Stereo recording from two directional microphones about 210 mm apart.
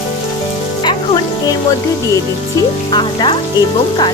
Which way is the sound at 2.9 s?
20° left (ahead or behind).